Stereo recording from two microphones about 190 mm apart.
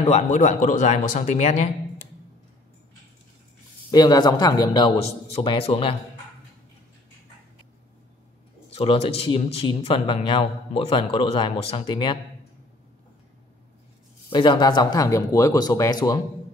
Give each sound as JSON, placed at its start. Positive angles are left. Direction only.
{"t": 0.0, "sound": "speech", "side_deg": 35}
{"t": 3.9, "sound": "a man's voice", "side_deg": 20}
{"t": 8.6, "sound": "a man's voice", "side_deg": 30}
{"t": 14.3, "sound": "a man's voice", "side_deg": 25}